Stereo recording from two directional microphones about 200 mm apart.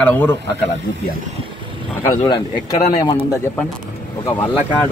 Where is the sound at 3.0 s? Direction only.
20° left (ahead or behind).